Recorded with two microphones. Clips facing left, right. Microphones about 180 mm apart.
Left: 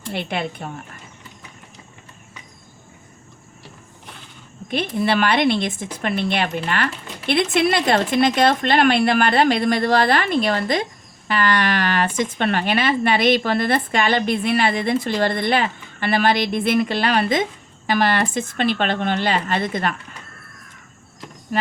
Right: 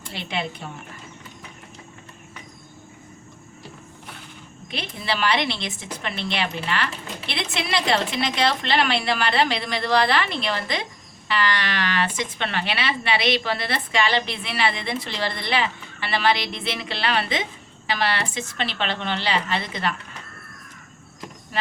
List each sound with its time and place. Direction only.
0.1 s speech: 55° left (ahead or behind)
4.7 s speech: 50° left (ahead or behind)